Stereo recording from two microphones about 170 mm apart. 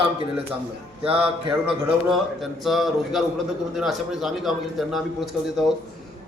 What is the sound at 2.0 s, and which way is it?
A man's voice, centre (ahead or behind).